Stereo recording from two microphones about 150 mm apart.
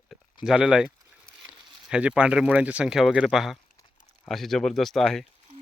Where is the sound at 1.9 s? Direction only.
5° right (ahead or behind).